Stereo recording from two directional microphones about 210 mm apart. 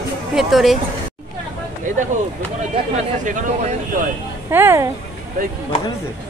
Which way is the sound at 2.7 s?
35° right (ahead or behind).